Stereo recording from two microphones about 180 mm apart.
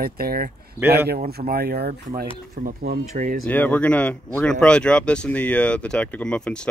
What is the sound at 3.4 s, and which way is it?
Speech, 10° left (ahead or behind).